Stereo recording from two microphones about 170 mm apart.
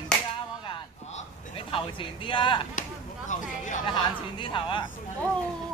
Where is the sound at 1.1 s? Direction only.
35° left (ahead or behind).